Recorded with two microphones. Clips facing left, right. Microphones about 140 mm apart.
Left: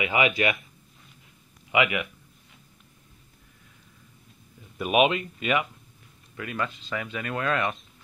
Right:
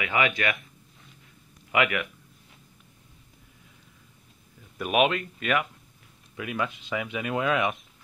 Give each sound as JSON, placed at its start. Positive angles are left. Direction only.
{"t": 0.0, "sound": "speech", "side_deg": 15}
{"t": 1.7, "sound": "speech", "side_deg": 5}
{"t": 4.7, "sound": "speech", "side_deg": 5}
{"t": 6.3, "sound": "speech", "side_deg": -10}